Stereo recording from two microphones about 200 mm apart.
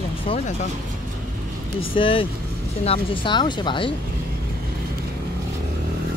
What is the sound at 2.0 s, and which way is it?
Speech, 25° left (ahead or behind).